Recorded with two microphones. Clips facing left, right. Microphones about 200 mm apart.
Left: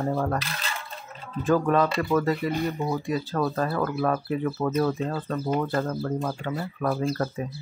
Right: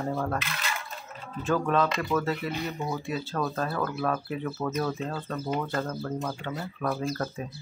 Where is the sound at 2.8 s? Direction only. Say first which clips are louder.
Left 4 dB; 25° left (ahead or behind).